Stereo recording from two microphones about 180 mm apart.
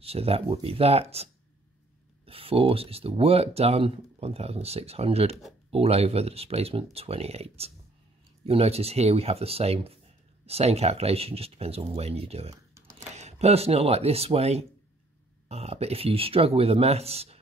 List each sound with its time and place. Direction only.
0.0 s speech: 35° right (ahead or behind)
12.8 s a sound: 15° right (ahead or behind)
13.1 s speech: 40° right (ahead or behind)